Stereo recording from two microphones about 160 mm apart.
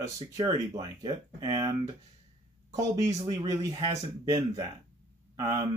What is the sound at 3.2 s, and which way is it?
Speech, 25° right (ahead or behind).